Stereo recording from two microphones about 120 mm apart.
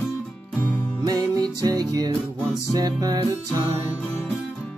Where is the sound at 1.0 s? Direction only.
35° right (ahead or behind).